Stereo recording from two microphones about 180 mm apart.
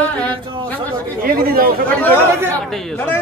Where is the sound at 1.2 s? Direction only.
55° right (ahead or behind).